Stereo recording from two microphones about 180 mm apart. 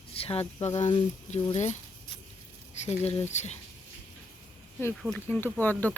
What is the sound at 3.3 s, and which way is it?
Speech, 40° left (ahead or behind).